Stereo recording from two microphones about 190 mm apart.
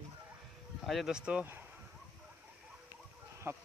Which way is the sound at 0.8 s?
Centre (ahead or behind).